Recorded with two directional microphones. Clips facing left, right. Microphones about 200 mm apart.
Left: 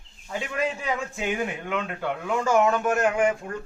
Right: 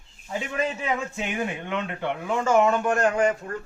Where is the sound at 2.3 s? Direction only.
Centre (ahead or behind).